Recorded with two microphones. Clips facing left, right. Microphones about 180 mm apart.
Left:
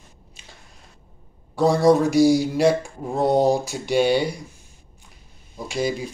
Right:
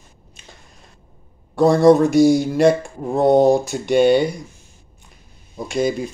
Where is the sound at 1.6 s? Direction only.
55° right (ahead or behind).